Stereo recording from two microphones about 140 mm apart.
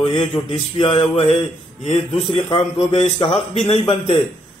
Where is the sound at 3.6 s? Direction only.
40° left (ahead or behind).